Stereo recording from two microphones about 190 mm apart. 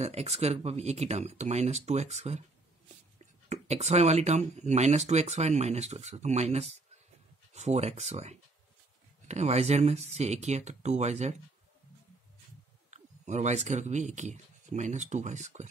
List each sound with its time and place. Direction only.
0.0 s speech: 35° right (ahead or behind)
3.4 s speech: 35° right (ahead or behind)
12.9 s speech: 40° right (ahead or behind)